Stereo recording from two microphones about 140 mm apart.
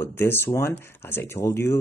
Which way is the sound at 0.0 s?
15° left (ahead or behind).